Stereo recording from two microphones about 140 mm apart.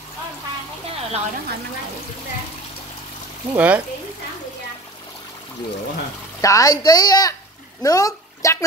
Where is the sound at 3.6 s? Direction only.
10° right (ahead or behind).